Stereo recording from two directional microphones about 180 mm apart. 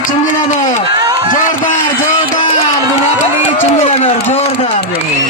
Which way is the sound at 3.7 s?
35° left (ahead or behind).